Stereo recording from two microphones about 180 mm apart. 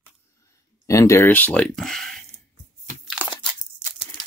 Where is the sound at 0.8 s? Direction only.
15° left (ahead or behind).